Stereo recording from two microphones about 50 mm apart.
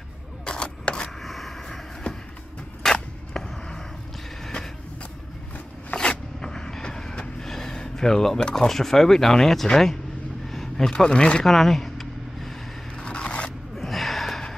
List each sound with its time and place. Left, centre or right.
0.5 s scissors: centre
1.2 s vehicle: centre
2.8 s a sound: centre
5.9 s vehicle: centre
8.5 s speech: centre
11.4 s vehicle: centre
12.9 s scissors: left
13.7 s gasp: centre